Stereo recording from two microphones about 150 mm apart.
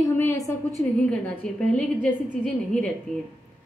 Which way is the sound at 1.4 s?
5° left (ahead or behind).